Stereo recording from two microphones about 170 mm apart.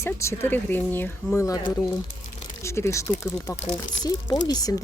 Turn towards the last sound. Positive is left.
turn(degrees=20)  # may be behind; listen again after turning